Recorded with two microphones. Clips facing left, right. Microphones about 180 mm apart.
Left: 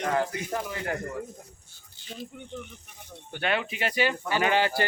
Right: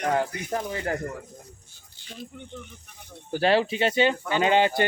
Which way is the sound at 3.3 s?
35° right (ahead or behind).